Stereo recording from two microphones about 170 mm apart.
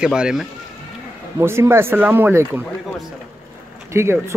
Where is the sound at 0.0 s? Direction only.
5° right (ahead or behind).